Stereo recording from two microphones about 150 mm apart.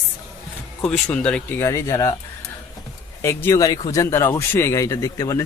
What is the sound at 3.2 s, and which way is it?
Speech, 15° left (ahead or behind).